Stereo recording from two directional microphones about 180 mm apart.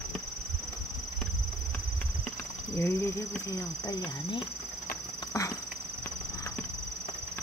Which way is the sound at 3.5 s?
20° left (ahead or behind).